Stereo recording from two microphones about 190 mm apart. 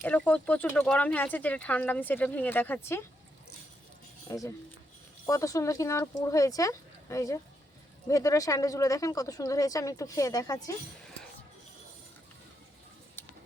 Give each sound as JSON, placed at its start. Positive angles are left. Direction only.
{"t": 0.0, "sound": "speech", "side_deg": 10}
{"t": 4.3, "sound": "speech", "side_deg": 15}
{"t": 13.2, "sound": "a sound", "side_deg": 10}